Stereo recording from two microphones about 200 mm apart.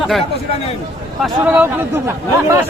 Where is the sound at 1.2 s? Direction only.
5° right (ahead or behind).